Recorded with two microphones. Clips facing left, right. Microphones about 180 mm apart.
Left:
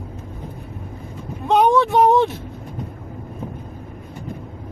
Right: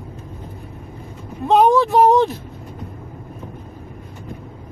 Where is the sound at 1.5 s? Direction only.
Centre (ahead or behind).